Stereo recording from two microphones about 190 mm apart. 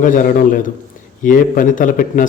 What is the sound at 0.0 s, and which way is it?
A man's voice, 45° left (ahead or behind).